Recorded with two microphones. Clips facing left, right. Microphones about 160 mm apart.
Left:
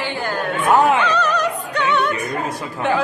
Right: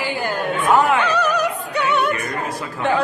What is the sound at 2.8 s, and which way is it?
Speech, centre (ahead or behind).